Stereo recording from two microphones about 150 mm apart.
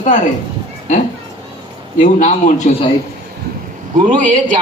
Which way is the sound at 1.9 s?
55° left (ahead or behind).